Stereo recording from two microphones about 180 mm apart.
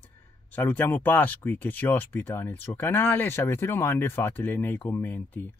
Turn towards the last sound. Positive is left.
turn(degrees=10)  # may be behind; listen again after turning